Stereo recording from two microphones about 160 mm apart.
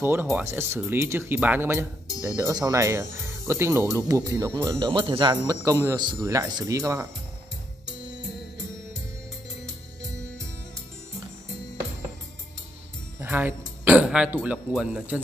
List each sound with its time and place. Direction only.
0.0 s a man's voice: 15° right (ahead or behind)
13.2 s speech: 10° right (ahead or behind)